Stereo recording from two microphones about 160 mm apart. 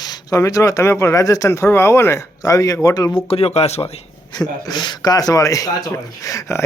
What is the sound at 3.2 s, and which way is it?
Speech, 40° left (ahead or behind).